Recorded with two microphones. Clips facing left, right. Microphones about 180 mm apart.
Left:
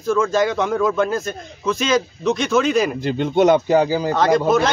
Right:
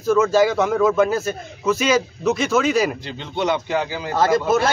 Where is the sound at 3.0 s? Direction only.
50° left (ahead or behind).